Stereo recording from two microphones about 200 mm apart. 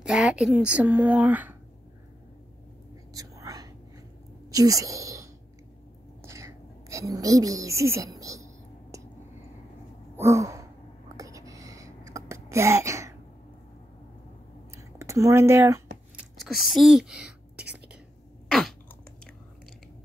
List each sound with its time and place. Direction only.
0.0 s speech: 5° right (ahead or behind)
3.1 s whispering: 20° right (ahead or behind)
4.5 s sigh: 15° right (ahead or behind)
6.2 s a woman's voice: 15° right (ahead or behind)
8.2 s a sound: 15° right (ahead or behind)
10.1 s a sound: 15° right (ahead or behind)
14.8 s a woman's voice: 15° right (ahead or behind)
16.2 s whispering: centre (ahead or behind)
18.5 s throat clearing: centre (ahead or behind)